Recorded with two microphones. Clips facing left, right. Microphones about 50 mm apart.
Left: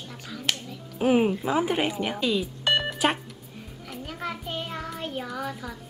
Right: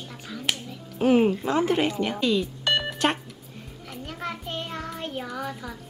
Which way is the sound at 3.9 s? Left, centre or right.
Centre.